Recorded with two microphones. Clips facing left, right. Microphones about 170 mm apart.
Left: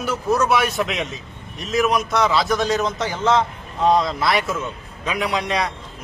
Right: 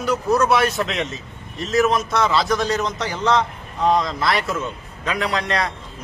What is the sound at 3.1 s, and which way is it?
Speech, 20° left (ahead or behind).